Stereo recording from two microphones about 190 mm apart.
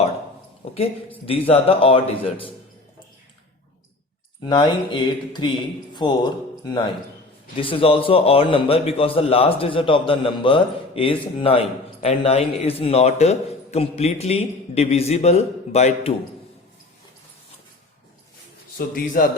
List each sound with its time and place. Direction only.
0.6 s a man's voice: 30° left (ahead or behind)
4.4 s a man's voice: 25° left (ahead or behind)
18.9 s a man's voice: 45° left (ahead or behind)